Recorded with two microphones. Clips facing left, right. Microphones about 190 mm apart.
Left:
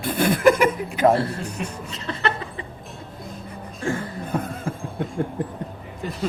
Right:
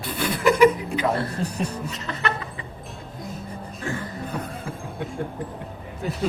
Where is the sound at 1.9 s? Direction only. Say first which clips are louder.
Left 2 dB; 30° left (ahead or behind).